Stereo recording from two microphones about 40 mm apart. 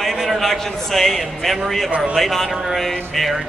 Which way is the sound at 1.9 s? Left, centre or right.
Right.